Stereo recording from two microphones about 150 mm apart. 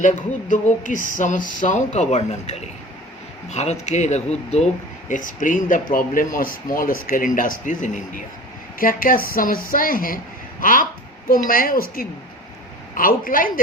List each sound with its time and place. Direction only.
0.0 s speech: 55° left (ahead or behind)
5.0 s a woman's voice: 60° left (ahead or behind)